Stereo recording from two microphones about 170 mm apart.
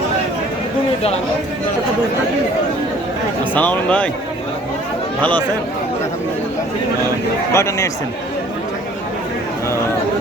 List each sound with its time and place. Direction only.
3.5 s speech: 10° left (ahead or behind)
7.5 s speech: 15° left (ahead or behind)